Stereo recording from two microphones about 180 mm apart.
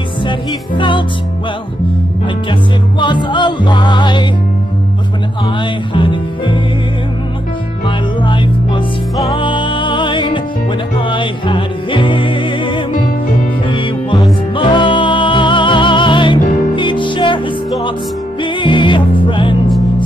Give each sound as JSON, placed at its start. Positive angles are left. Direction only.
{"t": 0.2, "sound": "music", "side_deg": 25}
{"t": 3.0, "sound": "music", "side_deg": 25}
{"t": 5.9, "sound": "music", "side_deg": 25}
{"t": 7.8, "sound": "music", "side_deg": 25}
{"t": 14.5, "sound": "music", "side_deg": 30}
{"t": 18.4, "sound": "music", "side_deg": 25}